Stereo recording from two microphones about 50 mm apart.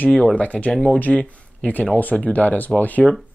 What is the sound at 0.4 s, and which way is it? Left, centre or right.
Speech, left.